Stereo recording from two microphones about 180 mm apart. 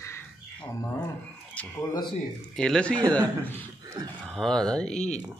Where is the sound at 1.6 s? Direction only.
10° left (ahead or behind).